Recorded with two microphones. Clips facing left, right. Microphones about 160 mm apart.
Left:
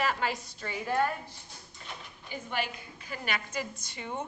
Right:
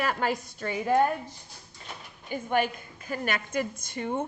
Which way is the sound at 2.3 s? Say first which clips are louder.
Right 8 dB; 50° right (ahead or behind).